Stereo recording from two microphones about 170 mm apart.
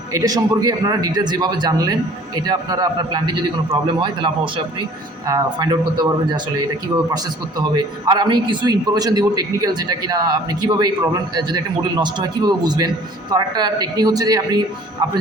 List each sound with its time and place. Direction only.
0.1 s a man's voice: 20° right (ahead or behind)
7.6 s a man's voice: 25° right (ahead or behind)